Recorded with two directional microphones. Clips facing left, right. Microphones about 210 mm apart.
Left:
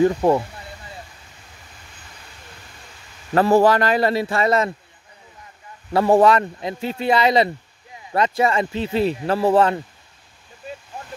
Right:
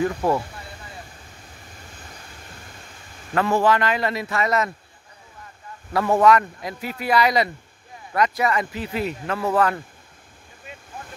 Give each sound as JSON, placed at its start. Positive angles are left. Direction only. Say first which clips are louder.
{"t": 0.0, "sound": "speech", "louder": "left 5 dB", "side_deg": 25}
{"t": 3.3, "sound": "a man's voice", "louder": "left 5 dB", "side_deg": 35}
{"t": 5.9, "sound": "speech", "louder": "left 3 dB", "side_deg": 30}
{"t": 10.6, "sound": "vehicle", "louder": "left 7 dB", "side_deg": 35}